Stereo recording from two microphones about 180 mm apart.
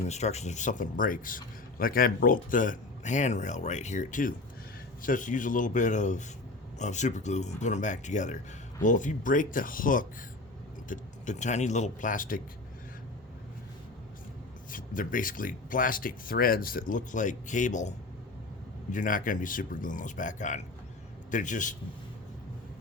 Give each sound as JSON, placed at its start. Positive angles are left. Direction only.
{"t": 0.0, "sound": "speech", "side_deg": 40}
{"t": 14.7, "sound": "speech", "side_deg": 50}